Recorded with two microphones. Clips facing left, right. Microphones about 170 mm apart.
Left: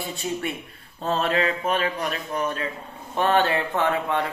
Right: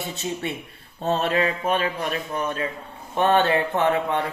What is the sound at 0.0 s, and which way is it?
Speech, 25° right (ahead or behind).